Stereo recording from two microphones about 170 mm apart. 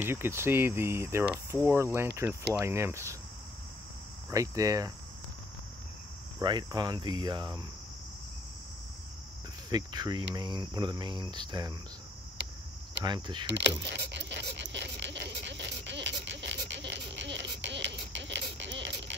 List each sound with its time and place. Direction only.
0.0 s speech: 15° right (ahead or behind)
4.3 s speech: 20° right (ahead or behind)
6.4 s speech: 25° right (ahead or behind)
9.7 s speech: 25° right (ahead or behind)
13.0 s speech: 25° right (ahead or behind)
13.5 s a sound: 90° right